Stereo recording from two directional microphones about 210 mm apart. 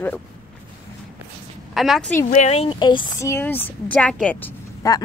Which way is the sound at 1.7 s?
Centre (ahead or behind).